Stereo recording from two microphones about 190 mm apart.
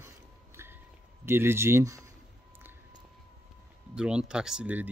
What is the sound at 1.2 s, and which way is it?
Speech, 10° right (ahead or behind).